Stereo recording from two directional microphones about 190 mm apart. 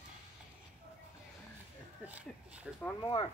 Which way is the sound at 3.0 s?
25° left (ahead or behind).